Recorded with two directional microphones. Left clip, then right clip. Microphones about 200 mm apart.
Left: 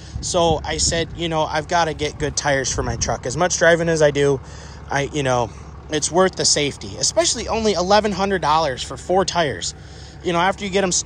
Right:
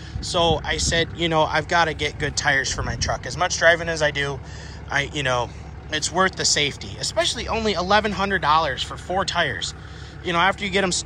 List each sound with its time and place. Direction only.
0.2 s speech: 25° left (ahead or behind)